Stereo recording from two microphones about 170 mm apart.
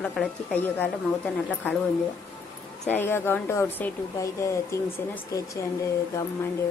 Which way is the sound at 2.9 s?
15° left (ahead or behind).